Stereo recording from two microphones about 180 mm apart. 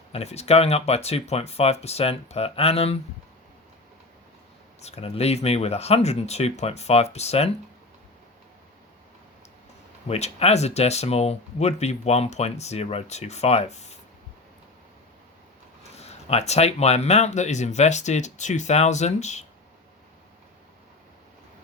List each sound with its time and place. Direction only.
0.1 s speech: 35° left (ahead or behind)
4.8 s speech: 35° left (ahead or behind)
10.1 s speech: 35° left (ahead or behind)
16.0 s speech: 35° left (ahead or behind)